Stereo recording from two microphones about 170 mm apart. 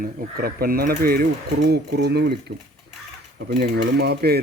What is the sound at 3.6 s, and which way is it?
Speech, 70° right (ahead or behind).